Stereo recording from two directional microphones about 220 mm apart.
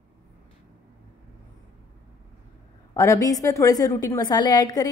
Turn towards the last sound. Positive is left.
turn(degrees=20)  # may be behind; listen again after turning